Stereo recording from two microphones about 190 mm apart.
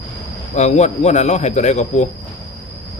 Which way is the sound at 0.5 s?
35° left (ahead or behind).